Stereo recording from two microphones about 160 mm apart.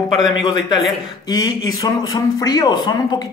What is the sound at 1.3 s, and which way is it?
A man's voice, 25° left (ahead or behind).